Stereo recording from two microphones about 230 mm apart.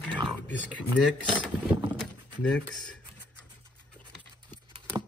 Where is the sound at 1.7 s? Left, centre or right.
Centre.